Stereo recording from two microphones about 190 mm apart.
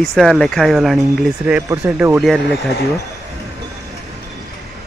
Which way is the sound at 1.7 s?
15° right (ahead or behind).